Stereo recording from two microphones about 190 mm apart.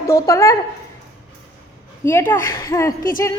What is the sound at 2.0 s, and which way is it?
Speech, 10° left (ahead or behind).